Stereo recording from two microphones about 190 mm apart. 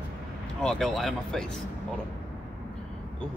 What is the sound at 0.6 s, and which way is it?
Speech, 5° left (ahead or behind).